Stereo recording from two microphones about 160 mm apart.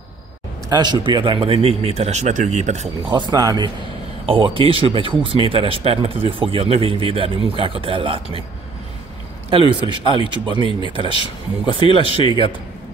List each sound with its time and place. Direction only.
0.7 s speech: 25° right (ahead or behind); by 2.9 s 45° right (ahead or behind)
3.1 s speech: 25° right (ahead or behind)
9.5 s speech: 30° right (ahead or behind)
11.1 s speech: 30° left (ahead or behind)